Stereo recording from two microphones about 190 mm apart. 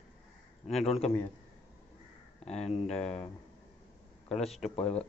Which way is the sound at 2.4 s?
5° left (ahead or behind).